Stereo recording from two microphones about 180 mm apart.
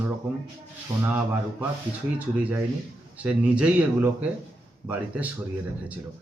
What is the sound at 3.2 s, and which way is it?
A man's voice, 5° right (ahead or behind).